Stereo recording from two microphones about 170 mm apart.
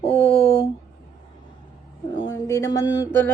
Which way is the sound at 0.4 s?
20° left (ahead or behind).